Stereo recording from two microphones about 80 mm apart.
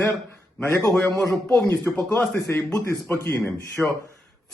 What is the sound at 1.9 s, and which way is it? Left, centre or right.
Speech, centre.